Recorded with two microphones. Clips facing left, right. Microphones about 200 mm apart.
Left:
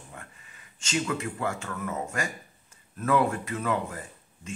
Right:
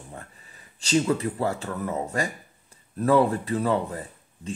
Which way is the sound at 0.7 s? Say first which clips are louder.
Right 7 dB; 35° right (ahead or behind).